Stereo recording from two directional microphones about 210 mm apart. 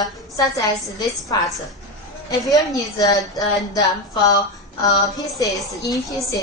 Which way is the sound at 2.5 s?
15° left (ahead or behind).